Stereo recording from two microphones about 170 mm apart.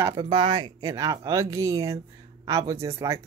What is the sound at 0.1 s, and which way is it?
Speech, 30° right (ahead or behind).